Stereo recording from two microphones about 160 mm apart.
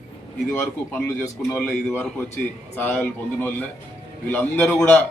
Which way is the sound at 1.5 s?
Centre (ahead or behind).